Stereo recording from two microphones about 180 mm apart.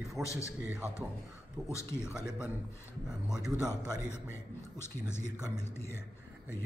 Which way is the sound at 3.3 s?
5° right (ahead or behind).